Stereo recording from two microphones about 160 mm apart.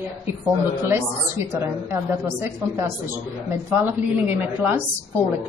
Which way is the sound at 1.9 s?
15° right (ahead or behind).